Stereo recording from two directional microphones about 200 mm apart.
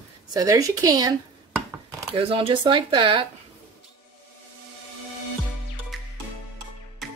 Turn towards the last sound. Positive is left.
turn(degrees=0)  # may be behind; listen again after turning